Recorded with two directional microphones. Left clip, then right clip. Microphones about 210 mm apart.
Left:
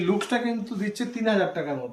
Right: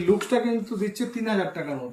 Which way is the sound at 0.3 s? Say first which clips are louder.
Right 3 dB; 15° left (ahead or behind).